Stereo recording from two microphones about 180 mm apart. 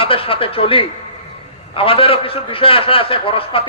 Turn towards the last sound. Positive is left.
turn(degrees=30)  # may be behind; listen again after turning